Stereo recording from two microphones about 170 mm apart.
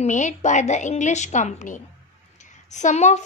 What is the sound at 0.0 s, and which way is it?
A woman's voice, 45° left (ahead or behind).